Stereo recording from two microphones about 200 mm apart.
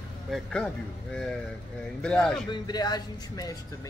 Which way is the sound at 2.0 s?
5° left (ahead or behind).